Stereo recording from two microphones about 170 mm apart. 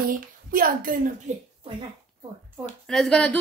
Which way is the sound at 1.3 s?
40° right (ahead or behind).